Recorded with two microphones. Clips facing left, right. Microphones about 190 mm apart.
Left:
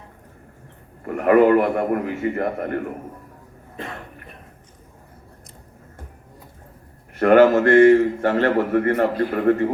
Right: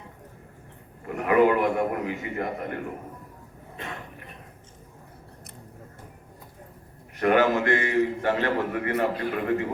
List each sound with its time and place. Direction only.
1.0 s a man's voice: 55° left (ahead or behind)
7.2 s a man's voice: 50° left (ahead or behind)